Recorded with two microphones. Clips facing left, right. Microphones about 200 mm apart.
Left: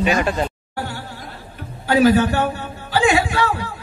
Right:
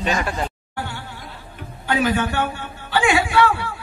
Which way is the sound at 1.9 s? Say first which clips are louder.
Left 6 dB; 40° left (ahead or behind).